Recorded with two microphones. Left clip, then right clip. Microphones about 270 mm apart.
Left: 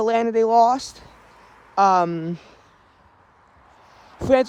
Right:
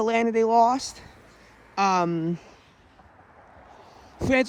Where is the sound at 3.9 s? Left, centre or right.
Left.